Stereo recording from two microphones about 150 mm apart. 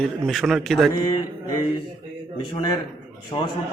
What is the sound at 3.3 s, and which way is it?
Speech, 25° left (ahead or behind).